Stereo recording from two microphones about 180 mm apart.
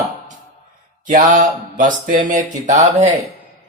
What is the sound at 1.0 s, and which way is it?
Mantra, 45° right (ahead or behind).